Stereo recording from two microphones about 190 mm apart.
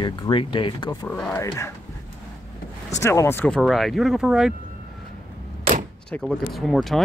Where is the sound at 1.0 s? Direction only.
5° left (ahead or behind).